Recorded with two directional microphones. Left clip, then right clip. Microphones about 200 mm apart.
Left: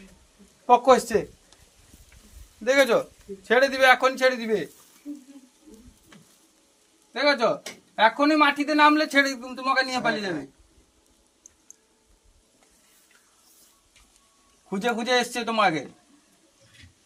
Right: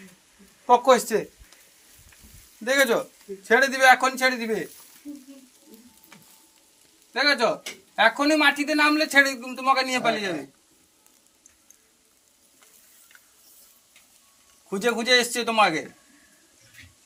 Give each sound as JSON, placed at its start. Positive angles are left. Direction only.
{"t": 0.7, "sound": "a man's voice", "side_deg": 40}
{"t": 2.6, "sound": "a man's voice", "side_deg": 40}
{"t": 7.1, "sound": "a man's voice", "side_deg": 30}
{"t": 14.7, "sound": "a man's voice", "side_deg": 30}